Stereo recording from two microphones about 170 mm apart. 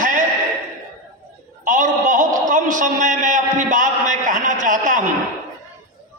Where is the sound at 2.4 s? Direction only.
50° right (ahead or behind).